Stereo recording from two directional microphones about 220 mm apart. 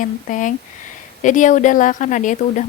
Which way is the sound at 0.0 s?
35° left (ahead or behind).